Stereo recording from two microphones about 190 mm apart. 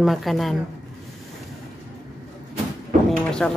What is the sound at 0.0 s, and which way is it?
Speech, centre (ahead or behind).